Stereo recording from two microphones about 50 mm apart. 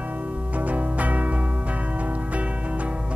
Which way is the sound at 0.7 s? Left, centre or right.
Right.